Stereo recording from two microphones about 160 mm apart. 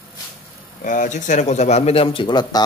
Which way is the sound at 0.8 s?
55° left (ahead or behind).